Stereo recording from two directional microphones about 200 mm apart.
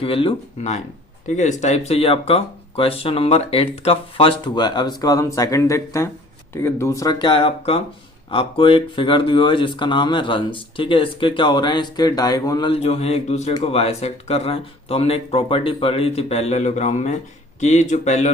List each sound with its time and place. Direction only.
0.0 s speech: 25° left (ahead or behind)